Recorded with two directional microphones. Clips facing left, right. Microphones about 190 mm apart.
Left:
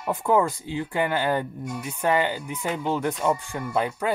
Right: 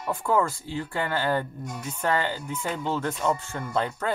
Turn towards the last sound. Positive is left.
turn(degrees=10)  # may be behind; listen again after turning